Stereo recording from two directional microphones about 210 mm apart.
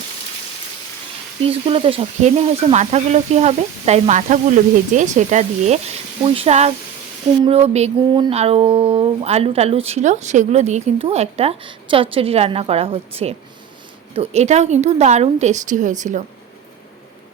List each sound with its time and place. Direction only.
1.5 s speech: 25° right (ahead or behind)